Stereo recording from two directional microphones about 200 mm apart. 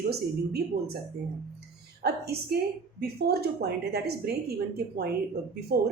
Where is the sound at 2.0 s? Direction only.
50° right (ahead or behind).